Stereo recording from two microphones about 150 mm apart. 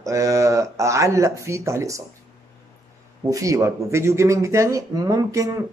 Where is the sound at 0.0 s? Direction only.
20° right (ahead or behind).